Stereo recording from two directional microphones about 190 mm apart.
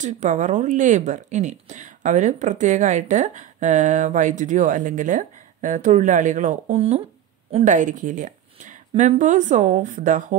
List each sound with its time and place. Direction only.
0.0 s speech: 40° right (ahead or behind)